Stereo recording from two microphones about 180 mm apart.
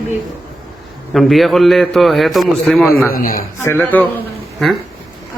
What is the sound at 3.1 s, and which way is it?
Speech, 50° left (ahead or behind).